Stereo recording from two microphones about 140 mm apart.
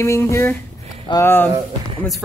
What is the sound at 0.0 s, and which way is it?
Speech, 20° left (ahead or behind).